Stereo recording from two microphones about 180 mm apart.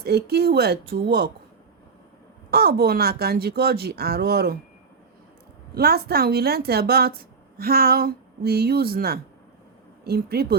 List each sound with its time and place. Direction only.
0.0 s speech: 60° right (ahead or behind)
2.5 s speech: 60° right (ahead or behind)
5.7 s speech: 60° right (ahead or behind)